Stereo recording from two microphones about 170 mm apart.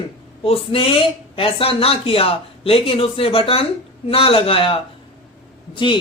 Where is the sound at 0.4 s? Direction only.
35° left (ahead or behind).